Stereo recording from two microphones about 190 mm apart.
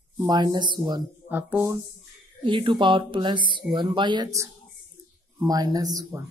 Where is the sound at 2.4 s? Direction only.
25° right (ahead or behind).